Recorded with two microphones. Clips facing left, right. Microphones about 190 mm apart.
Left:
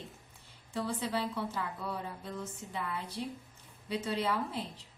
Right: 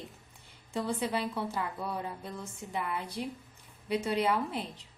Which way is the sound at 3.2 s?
65° right (ahead or behind).